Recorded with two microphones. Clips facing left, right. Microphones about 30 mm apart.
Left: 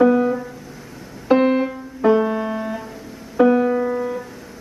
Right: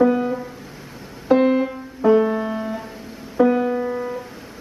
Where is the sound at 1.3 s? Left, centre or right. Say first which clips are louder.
Even; centre.